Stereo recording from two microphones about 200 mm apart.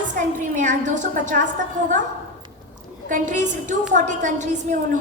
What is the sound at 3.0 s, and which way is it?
A woman's voice, 40° right (ahead or behind).